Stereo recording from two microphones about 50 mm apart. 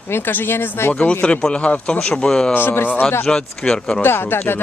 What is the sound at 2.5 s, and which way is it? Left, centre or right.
Speech, left.